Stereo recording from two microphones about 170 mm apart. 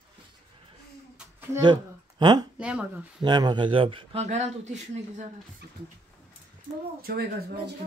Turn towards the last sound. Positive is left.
turn(degrees=-65)  # may be behind; listen again after turning